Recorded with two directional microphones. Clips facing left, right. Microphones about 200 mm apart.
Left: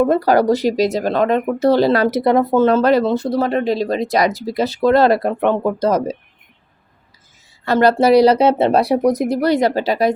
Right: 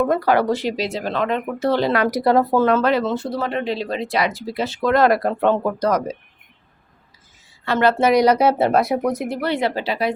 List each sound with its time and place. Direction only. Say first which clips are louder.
0.1 s speech: left 4 dB; 35° left (ahead or behind); by 2.6 s 20° left (ahead or behind)
2.6 s speech: left 4 dB; 35° left (ahead or behind)
7.6 s speech: left 4 dB; 40° left (ahead or behind)